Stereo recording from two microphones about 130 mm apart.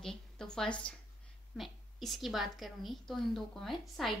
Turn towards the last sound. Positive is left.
turn(degrees=0)  # may be behind; listen again after turning